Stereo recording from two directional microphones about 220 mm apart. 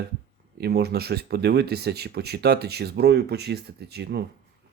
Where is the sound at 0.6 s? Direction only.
45° right (ahead or behind).